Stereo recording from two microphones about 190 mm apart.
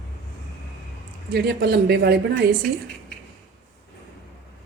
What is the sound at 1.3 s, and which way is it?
A woman's voice, 60° right (ahead or behind).